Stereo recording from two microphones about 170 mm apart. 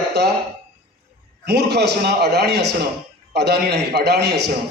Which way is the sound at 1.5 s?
75° right (ahead or behind).